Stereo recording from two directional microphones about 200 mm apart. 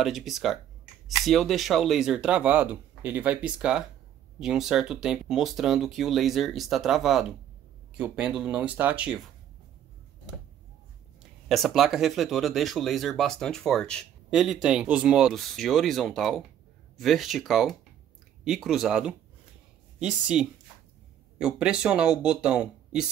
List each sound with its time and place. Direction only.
0.0 s speech: centre (ahead or behind)
11.4 s speech: centre (ahead or behind)